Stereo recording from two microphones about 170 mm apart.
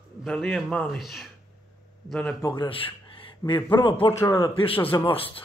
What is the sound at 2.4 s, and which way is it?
Speech, 25° left (ahead or behind).